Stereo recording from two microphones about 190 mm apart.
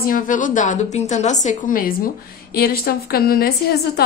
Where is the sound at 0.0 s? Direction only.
45° left (ahead or behind).